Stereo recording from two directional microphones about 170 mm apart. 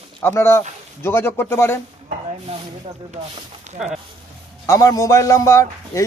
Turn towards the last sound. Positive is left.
turn(degrees=15)  # may be behind; listen again after turning